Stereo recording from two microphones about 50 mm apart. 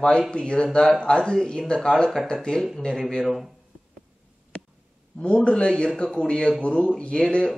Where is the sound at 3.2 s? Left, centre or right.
Centre.